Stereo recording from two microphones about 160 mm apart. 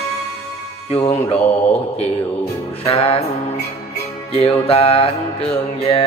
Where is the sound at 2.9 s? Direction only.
35° left (ahead or behind).